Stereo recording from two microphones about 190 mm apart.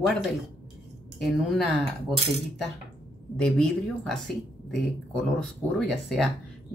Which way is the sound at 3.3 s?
5° left (ahead or behind).